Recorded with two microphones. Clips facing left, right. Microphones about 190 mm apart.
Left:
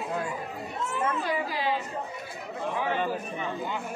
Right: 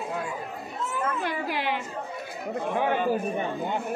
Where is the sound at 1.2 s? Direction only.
65° right (ahead or behind).